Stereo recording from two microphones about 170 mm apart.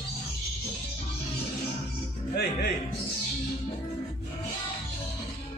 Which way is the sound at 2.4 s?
75° left (ahead or behind).